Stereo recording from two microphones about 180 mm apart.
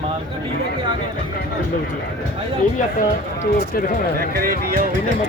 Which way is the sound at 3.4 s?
50° left (ahead or behind).